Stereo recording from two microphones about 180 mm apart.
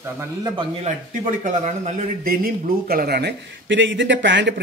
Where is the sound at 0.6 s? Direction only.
40° right (ahead or behind).